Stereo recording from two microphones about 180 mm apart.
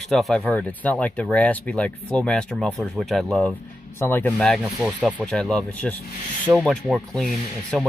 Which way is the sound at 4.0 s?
15° left (ahead or behind).